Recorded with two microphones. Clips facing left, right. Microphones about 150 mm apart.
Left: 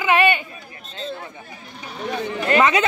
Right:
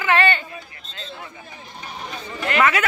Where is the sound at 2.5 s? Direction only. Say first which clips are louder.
Left 2 dB; 20° left (ahead or behind).